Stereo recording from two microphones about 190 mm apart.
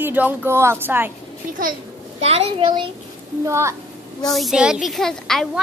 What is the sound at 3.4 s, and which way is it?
Speech, 15° right (ahead or behind).